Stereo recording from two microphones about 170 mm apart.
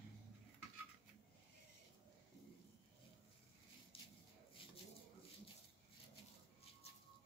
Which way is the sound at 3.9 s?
35° left (ahead or behind).